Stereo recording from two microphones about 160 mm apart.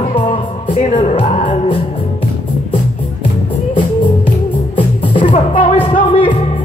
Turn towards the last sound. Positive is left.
turn(degrees=30)  # may be behind; listen again after turning